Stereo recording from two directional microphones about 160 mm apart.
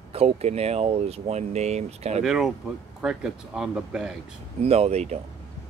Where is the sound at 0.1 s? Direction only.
40° right (ahead or behind).